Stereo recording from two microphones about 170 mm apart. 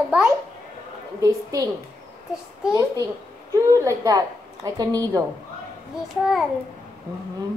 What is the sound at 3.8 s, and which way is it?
A woman's voice, 20° right (ahead or behind).